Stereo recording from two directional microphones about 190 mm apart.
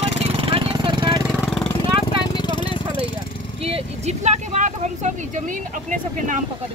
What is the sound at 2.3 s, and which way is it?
Vehicle, 25° left (ahead or behind).